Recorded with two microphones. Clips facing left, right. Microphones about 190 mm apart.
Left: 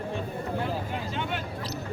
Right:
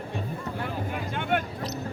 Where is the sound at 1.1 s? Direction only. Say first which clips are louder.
Right 7 dB; 55° right (ahead or behind).